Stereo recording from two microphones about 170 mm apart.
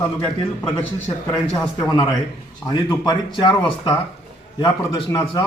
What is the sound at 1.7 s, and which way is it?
A man's voice, 25° left (ahead or behind).